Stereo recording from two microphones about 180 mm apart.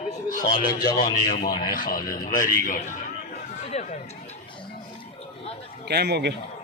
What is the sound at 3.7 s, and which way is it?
Speech, 40° left (ahead or behind).